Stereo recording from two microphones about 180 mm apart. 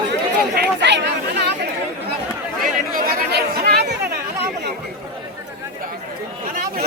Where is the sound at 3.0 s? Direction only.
55° right (ahead or behind).